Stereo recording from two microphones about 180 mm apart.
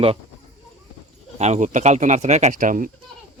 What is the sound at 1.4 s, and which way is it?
Speech, 40° right (ahead or behind).